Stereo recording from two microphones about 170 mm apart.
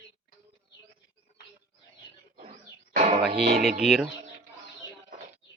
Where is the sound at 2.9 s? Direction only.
40° right (ahead or behind).